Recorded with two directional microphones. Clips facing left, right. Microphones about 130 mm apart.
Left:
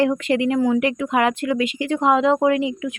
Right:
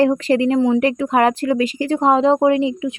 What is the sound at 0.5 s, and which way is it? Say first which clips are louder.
Speech: right 3 dB; 25° right (ahead or behind).